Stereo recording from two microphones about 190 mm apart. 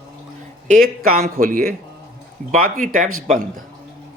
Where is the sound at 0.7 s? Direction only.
50° right (ahead or behind).